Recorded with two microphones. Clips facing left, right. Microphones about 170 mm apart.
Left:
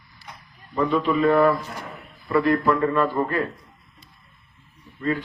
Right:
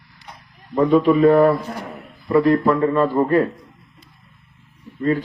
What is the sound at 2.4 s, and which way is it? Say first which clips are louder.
A man's voice: right 4 dB; 30° right (ahead or behind).